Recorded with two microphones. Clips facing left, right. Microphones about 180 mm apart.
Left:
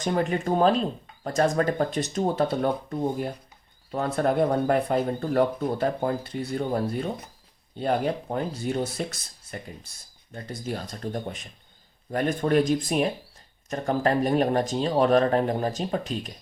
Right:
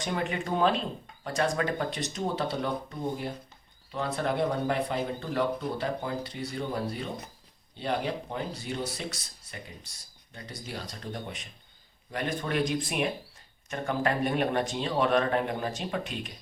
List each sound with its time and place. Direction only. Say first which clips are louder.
0.0 s speech: left 6 dB; 40° left (ahead or behind)